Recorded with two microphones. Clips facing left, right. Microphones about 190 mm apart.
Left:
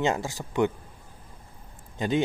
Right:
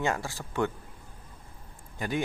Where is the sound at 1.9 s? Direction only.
20° left (ahead or behind).